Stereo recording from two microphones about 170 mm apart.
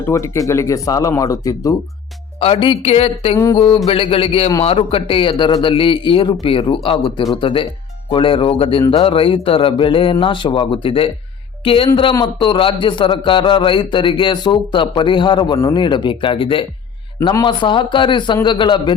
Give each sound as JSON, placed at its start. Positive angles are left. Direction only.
{"t": 0.0, "sound": "a man's voice", "side_deg": 15}
{"t": 2.4, "sound": "a man's voice", "side_deg": 30}
{"t": 3.3, "sound": "a man's voice", "side_deg": 20}
{"t": 3.8, "sound": "a man's voice", "side_deg": 35}